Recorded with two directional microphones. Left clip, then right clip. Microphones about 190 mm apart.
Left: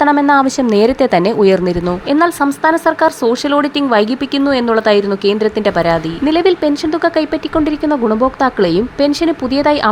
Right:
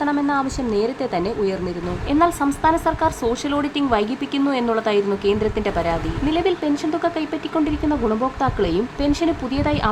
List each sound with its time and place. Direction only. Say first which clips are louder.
0.0 s a woman's voice: left 11 dB; 35° left (ahead or behind)